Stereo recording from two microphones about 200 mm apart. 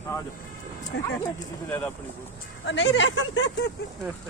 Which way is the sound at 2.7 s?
65° left (ahead or behind).